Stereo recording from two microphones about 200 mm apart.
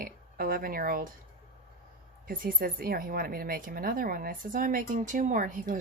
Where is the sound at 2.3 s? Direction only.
45° right (ahead or behind).